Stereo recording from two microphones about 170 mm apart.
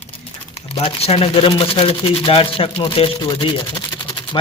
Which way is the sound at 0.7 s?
35° left (ahead or behind).